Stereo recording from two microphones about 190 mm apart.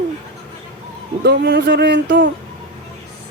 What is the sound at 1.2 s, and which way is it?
Speech, 60° right (ahead or behind).